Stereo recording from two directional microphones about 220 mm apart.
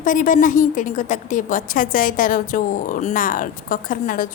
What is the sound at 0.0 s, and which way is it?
A woman's voice, 35° left (ahead or behind).